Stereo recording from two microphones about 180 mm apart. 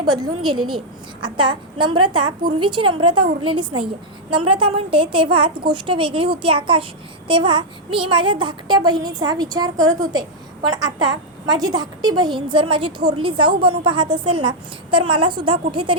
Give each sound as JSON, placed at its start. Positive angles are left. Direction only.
{"t": 1.2, "sound": "a child's voice", "side_deg": -25}